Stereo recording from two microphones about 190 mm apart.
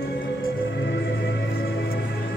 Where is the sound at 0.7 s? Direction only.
65° left (ahead or behind).